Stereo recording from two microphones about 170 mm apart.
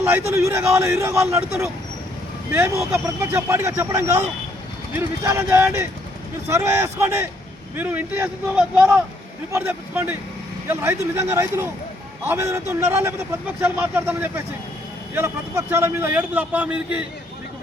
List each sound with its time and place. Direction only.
0.0 s a man's voice: 15° right (ahead or behind)
2.5 s a man's voice: 15° right (ahead or behind)